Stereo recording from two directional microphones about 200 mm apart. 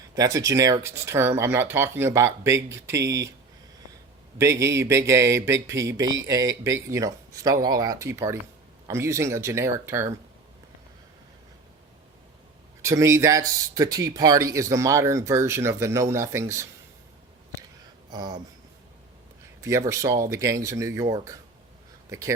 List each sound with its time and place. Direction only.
0.2 s speech: 15° right (ahead or behind)
4.4 s speech: 15° right (ahead or behind)
12.8 s speech: 15° right (ahead or behind)
18.1 s speech: 20° right (ahead or behind)
19.6 s speech: 15° right (ahead or behind)